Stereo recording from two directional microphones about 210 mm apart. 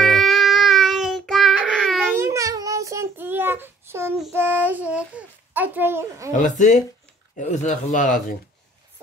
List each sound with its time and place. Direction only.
0.0 s child singing: centre (ahead or behind)
2.1 s child singing: 15° right (ahead or behind)
6.3 s speech: 35° left (ahead or behind)